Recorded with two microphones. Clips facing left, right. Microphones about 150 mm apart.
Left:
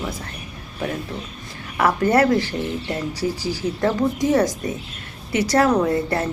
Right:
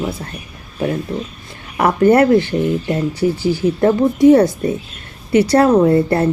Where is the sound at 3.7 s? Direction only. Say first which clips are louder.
Right 5 dB; 30° right (ahead or behind).